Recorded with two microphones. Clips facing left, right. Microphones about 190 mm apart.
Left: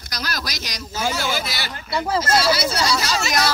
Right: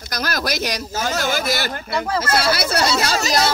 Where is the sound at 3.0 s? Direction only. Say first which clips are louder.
Right 3 dB; 45° right (ahead or behind).